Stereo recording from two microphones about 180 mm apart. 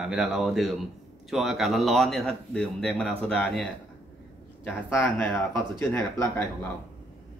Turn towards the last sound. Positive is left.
turn(degrees=15)  # may be behind; listen again after turning